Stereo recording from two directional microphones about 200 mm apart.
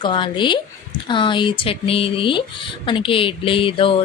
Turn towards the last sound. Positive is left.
turn(degrees=25)  # may be behind; listen again after turning